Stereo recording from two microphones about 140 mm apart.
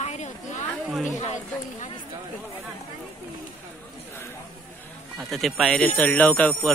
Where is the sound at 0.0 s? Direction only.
55° left (ahead or behind).